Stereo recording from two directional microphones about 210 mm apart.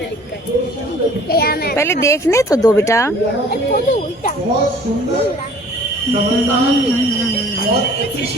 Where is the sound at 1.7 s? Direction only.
15° left (ahead or behind).